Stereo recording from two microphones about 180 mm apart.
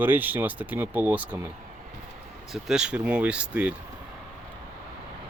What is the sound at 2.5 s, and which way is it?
Speech, 5° right (ahead or behind).